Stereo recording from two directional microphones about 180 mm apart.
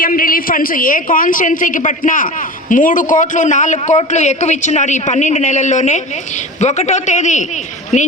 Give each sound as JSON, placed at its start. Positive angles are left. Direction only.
{"t": 0.0, "sound": "a woman's voice", "side_deg": 50}